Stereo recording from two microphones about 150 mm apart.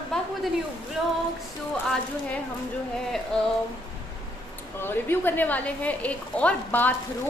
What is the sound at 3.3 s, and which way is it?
Speech, 5° left (ahead or behind).